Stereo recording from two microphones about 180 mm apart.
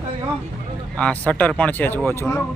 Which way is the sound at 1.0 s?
5° left (ahead or behind).